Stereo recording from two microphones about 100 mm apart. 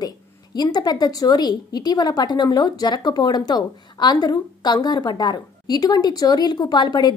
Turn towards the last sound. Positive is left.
turn(degrees=45)  # may be behind; listen again after turning